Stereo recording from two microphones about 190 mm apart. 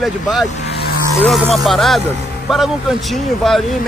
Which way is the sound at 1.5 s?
Centre (ahead or behind).